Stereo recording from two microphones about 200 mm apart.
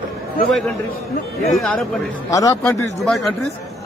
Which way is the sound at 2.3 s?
15° left (ahead or behind).